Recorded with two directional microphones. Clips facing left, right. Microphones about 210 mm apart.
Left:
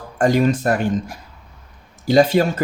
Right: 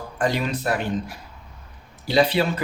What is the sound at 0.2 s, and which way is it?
Speech, 45° left (ahead or behind).